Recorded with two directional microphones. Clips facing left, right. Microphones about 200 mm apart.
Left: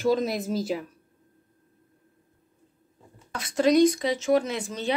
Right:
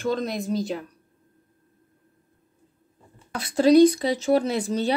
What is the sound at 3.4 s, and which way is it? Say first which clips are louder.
Speech: right 4 dB; 35° right (ahead or behind).